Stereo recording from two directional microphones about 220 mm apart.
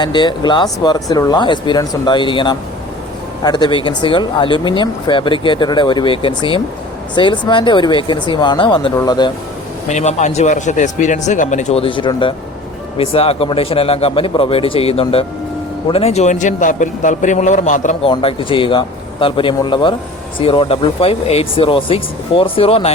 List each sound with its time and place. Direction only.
0.0 s speech: 20° left (ahead or behind)
9.9 s a man's voice: 30° left (ahead or behind)
18.1 s speech: 25° left (ahead or behind)